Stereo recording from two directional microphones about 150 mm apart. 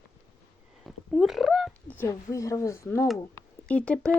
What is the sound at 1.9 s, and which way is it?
Speech, 15° left (ahead or behind).